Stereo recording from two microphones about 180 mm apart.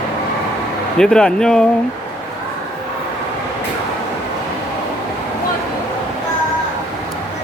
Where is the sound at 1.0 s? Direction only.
5° left (ahead or behind).